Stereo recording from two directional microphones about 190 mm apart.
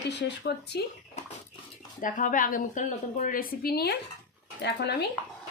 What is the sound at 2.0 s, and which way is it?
A woman's voice, 45° left (ahead or behind).